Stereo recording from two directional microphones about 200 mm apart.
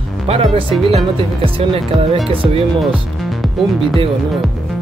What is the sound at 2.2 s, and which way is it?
Speech, 30° right (ahead or behind).